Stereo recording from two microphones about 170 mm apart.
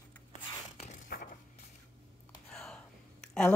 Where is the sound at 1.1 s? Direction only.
55° left (ahead or behind).